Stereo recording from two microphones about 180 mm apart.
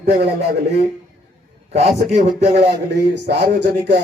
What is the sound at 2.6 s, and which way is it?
Speech, 65° right (ahead or behind).